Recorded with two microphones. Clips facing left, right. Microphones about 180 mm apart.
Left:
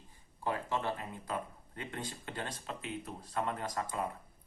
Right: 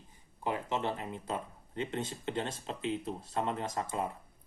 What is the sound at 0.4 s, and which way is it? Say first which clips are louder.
Speech: right 2 dB; 20° right (ahead or behind).